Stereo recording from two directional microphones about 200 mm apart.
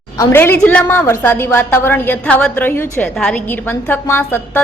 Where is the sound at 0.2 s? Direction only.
10° left (ahead or behind).